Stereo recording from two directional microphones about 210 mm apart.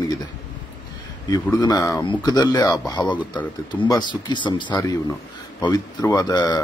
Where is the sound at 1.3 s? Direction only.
15° left (ahead or behind).